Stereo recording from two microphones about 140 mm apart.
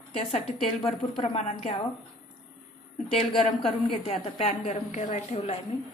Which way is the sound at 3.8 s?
40° left (ahead or behind).